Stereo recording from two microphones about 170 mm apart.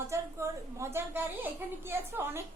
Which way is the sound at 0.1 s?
15° right (ahead or behind).